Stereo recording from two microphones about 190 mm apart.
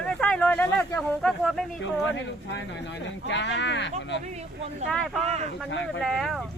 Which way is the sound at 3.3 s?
65° left (ahead or behind).